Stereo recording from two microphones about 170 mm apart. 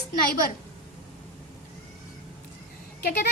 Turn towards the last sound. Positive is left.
turn(degrees=60)  # may be behind; listen again after turning